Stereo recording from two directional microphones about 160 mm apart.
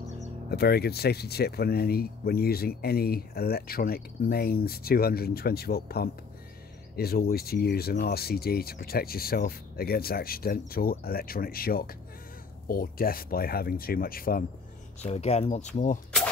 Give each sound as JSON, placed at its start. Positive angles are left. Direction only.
{"t": 0.5, "sound": "speech", "side_deg": 80}
{"t": 15.0, "sound": "speech", "side_deg": 40}